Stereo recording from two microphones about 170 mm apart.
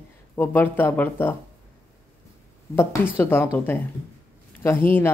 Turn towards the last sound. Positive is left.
turn(degrees=15)  # may be behind; listen again after turning